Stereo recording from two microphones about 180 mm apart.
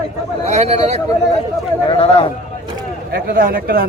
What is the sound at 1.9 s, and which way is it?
Speech, 30° left (ahead or behind).